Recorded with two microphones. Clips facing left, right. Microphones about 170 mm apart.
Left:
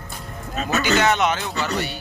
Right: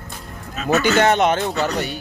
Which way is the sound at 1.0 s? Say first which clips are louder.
Right 4 dB; 50° right (ahead or behind).